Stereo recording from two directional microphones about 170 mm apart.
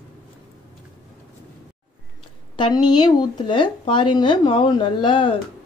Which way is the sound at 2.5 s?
25° left (ahead or behind).